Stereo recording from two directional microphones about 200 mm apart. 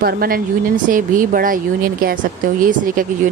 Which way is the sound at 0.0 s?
50° right (ahead or behind).